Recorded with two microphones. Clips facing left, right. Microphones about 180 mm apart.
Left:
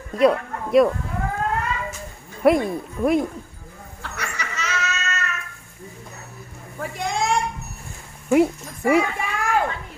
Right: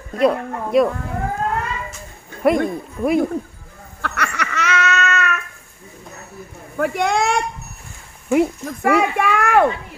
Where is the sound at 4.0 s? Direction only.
70° right (ahead or behind).